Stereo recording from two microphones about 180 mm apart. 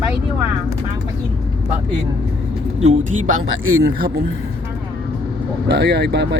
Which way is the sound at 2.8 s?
40° right (ahead or behind).